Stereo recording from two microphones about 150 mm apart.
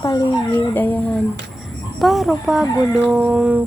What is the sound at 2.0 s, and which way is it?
Speech, centre (ahead or behind).